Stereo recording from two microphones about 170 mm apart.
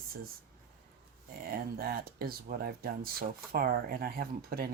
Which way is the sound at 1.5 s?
60° right (ahead or behind).